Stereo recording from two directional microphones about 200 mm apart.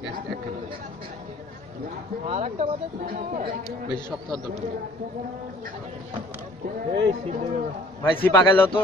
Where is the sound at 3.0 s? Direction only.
45° right (ahead or behind).